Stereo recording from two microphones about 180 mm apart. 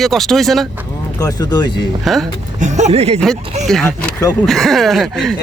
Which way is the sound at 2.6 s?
40° right (ahead or behind).